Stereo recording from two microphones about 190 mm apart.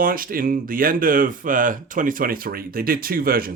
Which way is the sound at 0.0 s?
50° right (ahead or behind).